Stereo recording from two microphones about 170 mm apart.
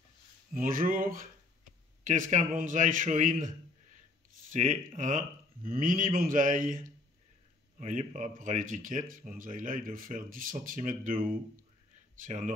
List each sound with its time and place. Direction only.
0.6 s speech: 55° right (ahead or behind)